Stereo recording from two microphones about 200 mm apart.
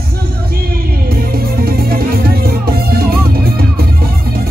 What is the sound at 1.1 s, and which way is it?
Music, 50° right (ahead or behind).